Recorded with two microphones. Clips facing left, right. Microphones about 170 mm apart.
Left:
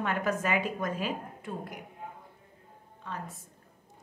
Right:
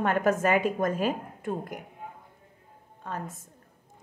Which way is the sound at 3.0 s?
50° right (ahead or behind).